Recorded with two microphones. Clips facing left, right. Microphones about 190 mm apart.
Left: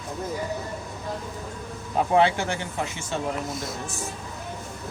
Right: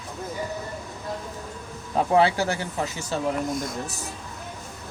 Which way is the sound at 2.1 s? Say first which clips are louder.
Right 1 dB; 35° right (ahead or behind).